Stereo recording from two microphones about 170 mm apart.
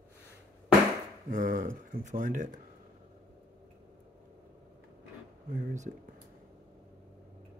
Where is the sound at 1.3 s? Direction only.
50° right (ahead or behind).